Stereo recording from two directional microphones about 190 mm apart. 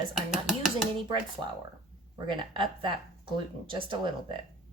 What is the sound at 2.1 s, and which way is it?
A woman's voice, 25° right (ahead or behind).